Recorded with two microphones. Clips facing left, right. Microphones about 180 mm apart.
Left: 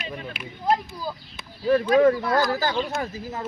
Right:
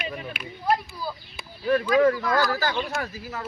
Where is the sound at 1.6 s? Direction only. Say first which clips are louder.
Left 2 dB; 25° left (ahead or behind).